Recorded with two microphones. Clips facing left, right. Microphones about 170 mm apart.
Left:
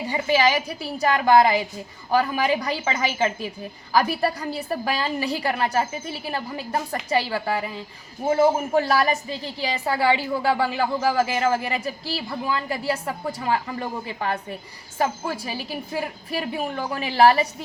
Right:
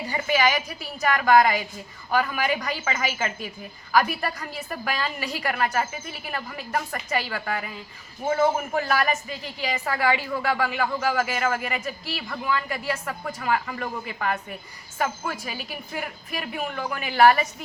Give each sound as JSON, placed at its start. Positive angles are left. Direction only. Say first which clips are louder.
{"t": 0.1, "sound": "a woman's voice", "louder": "left 3 dB", "side_deg": 30}